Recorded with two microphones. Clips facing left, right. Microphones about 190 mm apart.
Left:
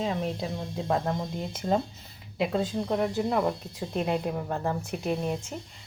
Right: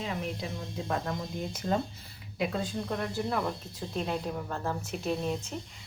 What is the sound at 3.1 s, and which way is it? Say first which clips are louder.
Speech: left 5 dB; 20° left (ahead or behind).